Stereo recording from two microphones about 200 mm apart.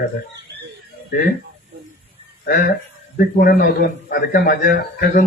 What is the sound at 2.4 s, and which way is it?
A man's voice, 45° left (ahead or behind).